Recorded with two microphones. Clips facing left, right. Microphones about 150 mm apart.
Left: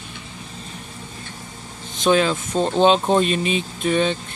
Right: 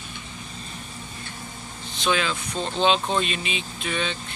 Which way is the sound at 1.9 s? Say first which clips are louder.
Left 7 dB; 45° left (ahead or behind).